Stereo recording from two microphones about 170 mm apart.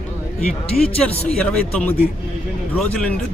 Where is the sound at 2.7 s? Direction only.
5° left (ahead or behind).